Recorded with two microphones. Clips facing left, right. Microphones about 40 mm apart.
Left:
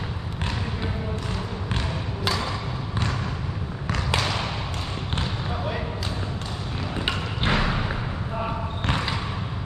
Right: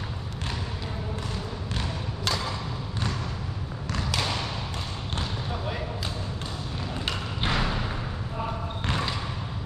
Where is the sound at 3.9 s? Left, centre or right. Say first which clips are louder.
Left 4 dB; left.